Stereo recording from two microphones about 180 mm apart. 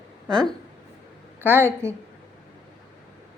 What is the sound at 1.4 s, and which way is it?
Speech, 10° right (ahead or behind).